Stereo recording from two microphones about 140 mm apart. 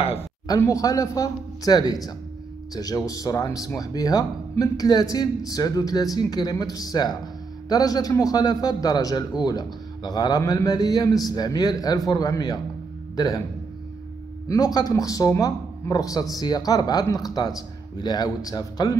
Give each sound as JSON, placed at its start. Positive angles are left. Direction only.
{"t": 0.5, "sound": "speech", "side_deg": 25}
{"t": 14.5, "sound": "speech", "side_deg": 25}